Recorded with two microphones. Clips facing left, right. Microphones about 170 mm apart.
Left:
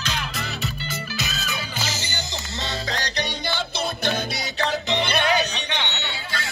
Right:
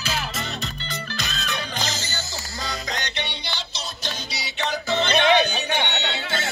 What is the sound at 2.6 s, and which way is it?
Music, 35° left (ahead or behind).